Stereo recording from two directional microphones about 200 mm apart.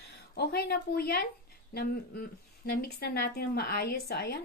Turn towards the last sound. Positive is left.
turn(degrees=55)  # may be behind; listen again after turning